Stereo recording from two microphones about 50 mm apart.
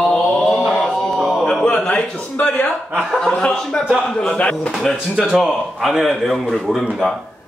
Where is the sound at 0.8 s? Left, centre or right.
Centre.